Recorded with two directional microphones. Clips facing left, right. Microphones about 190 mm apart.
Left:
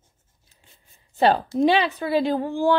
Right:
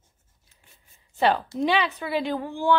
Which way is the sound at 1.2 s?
35° left (ahead or behind).